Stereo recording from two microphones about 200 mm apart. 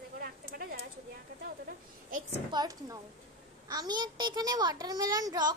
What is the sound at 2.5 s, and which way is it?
A child's voice, 20° right (ahead or behind).